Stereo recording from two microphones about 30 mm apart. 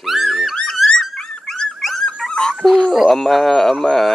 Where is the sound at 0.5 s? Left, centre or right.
Left.